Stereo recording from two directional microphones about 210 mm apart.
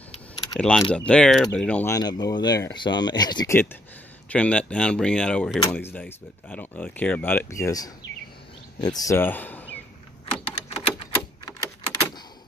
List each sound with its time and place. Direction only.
0.6 s speech: 5° left (ahead or behind)
4.3 s speech: 5° left (ahead or behind)
10.4 s typewriter: 25° left (ahead or behind)